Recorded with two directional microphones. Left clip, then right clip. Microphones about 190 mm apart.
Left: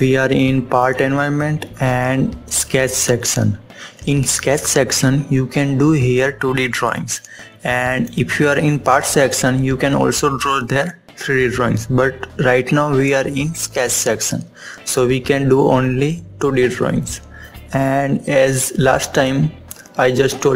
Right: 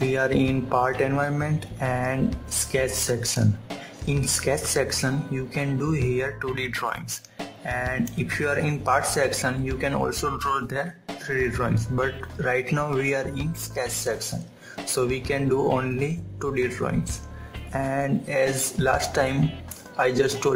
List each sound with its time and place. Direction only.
0.1 s speech: 20° left (ahead or behind)